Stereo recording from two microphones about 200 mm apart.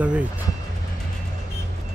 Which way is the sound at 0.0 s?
5° right (ahead or behind).